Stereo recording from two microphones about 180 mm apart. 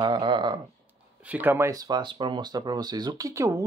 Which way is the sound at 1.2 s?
10° right (ahead or behind).